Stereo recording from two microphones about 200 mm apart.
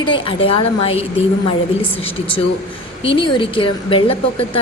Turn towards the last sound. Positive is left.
turn(degrees=25)  # may be behind; listen again after turning